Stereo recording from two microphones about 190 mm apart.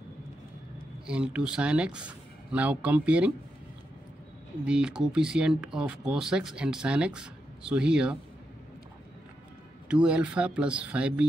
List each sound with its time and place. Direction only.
1.0 s speech: 5° right (ahead or behind)
4.6 s speech: 5° right (ahead or behind)
9.8 s speech: 5° right (ahead or behind)